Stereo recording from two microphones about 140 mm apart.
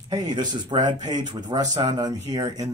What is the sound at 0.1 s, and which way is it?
Speech, 30° right (ahead or behind).